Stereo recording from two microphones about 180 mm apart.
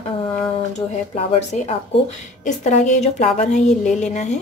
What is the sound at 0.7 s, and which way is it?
A woman's voice, 40° left (ahead or behind).